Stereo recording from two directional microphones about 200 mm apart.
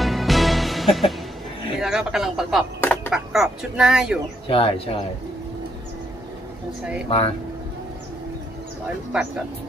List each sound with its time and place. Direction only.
0.0 s music: centre (ahead or behind)
1.8 s speech: 5° right (ahead or behind)
4.5 s speech: 30° left (ahead or behind)
7.1 s speech: 30° left (ahead or behind)
8.8 s speech: 5° right (ahead or behind)